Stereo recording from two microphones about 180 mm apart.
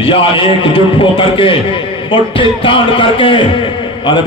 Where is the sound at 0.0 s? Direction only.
30° left (ahead or behind).